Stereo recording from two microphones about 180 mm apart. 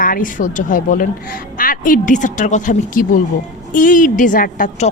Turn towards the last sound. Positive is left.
turn(degrees=45)  # may be behind; listen again after turning